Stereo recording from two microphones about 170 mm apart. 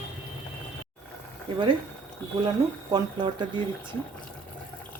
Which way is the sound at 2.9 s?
25° right (ahead or behind).